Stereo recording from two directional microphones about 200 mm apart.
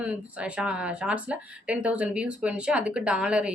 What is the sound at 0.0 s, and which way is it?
A woman's voice, 5° right (ahead or behind).